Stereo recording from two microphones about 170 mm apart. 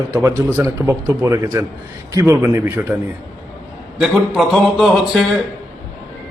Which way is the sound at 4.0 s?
Centre (ahead or behind).